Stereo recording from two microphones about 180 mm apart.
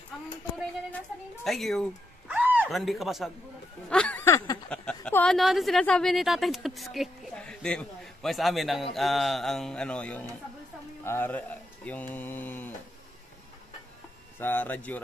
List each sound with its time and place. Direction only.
0.9 s speech: centre (ahead or behind)
3.9 s a sound: 5° left (ahead or behind)
4.6 s a woman's voice: 5° left (ahead or behind)
14.4 s speech: 10° left (ahead or behind)